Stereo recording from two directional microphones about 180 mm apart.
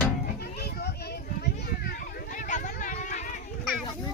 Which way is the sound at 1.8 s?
50° left (ahead or behind).